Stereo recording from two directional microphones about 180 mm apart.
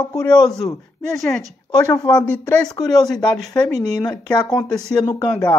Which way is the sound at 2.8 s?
20° left (ahead or behind).